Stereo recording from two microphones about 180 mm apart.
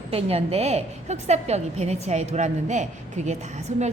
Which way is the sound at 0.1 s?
35° right (ahead or behind).